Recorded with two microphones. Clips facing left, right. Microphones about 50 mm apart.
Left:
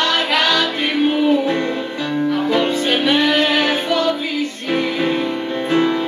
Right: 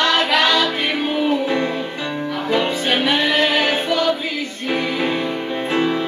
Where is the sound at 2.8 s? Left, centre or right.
Centre.